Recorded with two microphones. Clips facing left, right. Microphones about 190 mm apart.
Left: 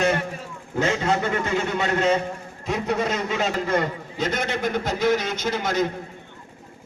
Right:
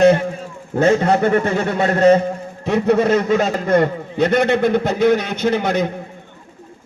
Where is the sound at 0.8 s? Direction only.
60° right (ahead or behind).